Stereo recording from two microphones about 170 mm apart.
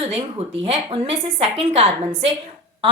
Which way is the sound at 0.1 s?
35° right (ahead or behind).